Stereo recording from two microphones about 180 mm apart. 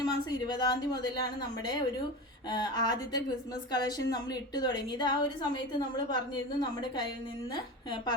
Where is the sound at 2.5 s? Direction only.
25° left (ahead or behind).